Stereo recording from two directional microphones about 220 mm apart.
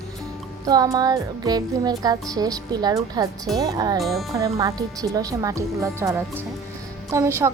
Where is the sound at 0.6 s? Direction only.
15° right (ahead or behind).